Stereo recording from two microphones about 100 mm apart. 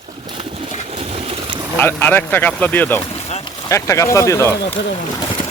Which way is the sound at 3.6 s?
30° left (ahead or behind).